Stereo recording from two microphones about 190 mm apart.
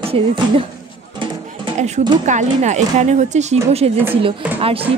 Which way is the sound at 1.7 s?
35° right (ahead or behind).